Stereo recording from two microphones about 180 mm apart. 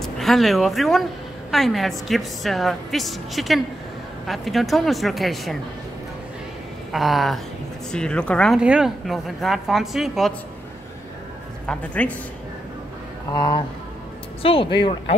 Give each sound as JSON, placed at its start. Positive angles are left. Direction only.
{"t": 0.0, "sound": "speech", "side_deg": 0}
{"t": 6.9, "sound": "speech", "side_deg": 0}
{"t": 11.6, "sound": "speech", "side_deg": 5}
{"t": 13.3, "sound": "speech", "side_deg": 20}